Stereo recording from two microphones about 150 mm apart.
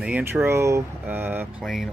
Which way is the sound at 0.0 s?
10° right (ahead or behind).